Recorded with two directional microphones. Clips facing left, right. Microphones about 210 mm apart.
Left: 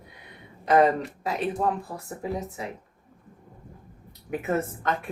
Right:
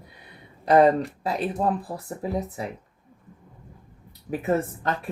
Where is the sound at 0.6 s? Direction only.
35° right (ahead or behind).